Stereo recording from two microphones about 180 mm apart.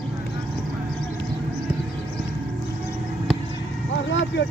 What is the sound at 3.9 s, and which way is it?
Vehicle, 85° left.